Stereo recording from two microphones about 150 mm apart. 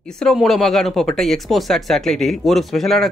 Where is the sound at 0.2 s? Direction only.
Centre (ahead or behind).